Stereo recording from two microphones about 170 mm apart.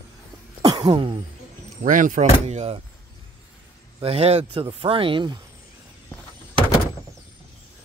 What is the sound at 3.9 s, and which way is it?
Speech, 35° right (ahead or behind).